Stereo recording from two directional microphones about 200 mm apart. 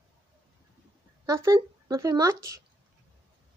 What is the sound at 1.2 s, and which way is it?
Speech, 15° right (ahead or behind).